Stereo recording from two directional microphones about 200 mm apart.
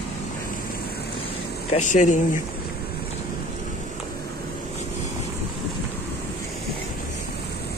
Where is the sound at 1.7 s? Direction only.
40° left (ahead or behind).